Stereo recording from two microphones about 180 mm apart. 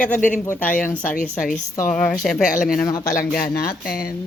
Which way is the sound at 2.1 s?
Centre (ahead or behind).